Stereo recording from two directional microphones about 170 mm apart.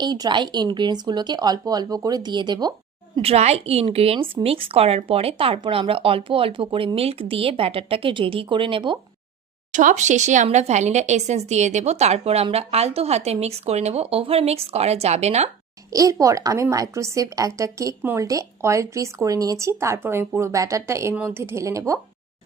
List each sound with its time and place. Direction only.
0.0 s speech: 25° right (ahead or behind)
3.2 s a woman's voice: 35° right (ahead or behind)
9.7 s a woman's voice: 45° right (ahead or behind)
15.9 s speech: 20° right (ahead or behind)